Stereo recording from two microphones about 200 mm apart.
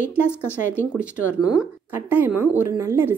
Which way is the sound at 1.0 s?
5° right (ahead or behind).